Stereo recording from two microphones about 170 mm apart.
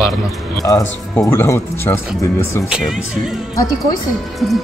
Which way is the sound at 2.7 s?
5° right (ahead or behind).